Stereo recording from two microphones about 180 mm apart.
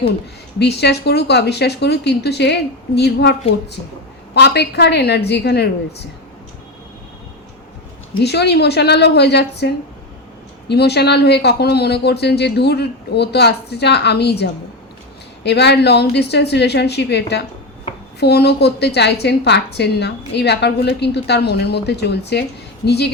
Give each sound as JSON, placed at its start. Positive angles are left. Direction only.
{"t": 0.6, "sound": "speech", "side_deg": 65}
{"t": 4.4, "sound": "speech", "side_deg": 65}
{"t": 8.2, "sound": "speech", "side_deg": 65}